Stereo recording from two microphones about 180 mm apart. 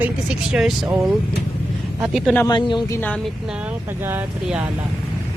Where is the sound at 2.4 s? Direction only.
25° left (ahead or behind).